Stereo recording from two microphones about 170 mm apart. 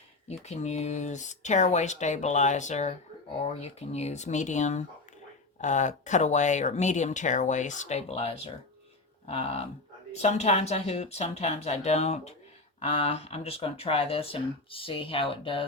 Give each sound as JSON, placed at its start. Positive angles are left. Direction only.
{"t": 0.3, "sound": "speech", "side_deg": 40}